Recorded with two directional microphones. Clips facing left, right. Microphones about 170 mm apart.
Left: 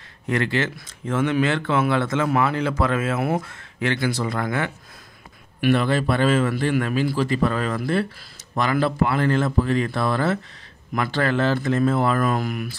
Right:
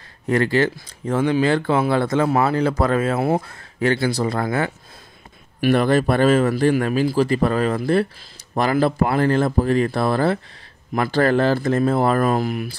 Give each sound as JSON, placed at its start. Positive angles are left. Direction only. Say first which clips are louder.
{"t": 0.3, "sound": "speech", "louder": "right 5 dB", "side_deg": -35}